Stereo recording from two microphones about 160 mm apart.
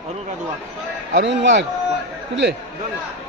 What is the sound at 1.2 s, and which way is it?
Speech, 90° right.